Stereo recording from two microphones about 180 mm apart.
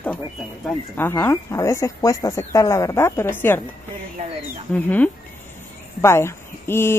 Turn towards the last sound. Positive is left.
turn(degrees=15)  # may be behind; listen again after turning